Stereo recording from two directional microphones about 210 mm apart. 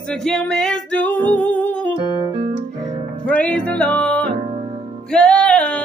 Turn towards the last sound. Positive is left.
turn(degrees=5)  # may be behind; listen again after turning